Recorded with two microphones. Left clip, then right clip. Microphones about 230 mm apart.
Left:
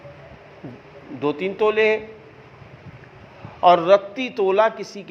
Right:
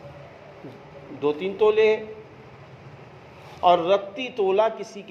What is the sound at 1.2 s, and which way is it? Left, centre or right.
Speech, left.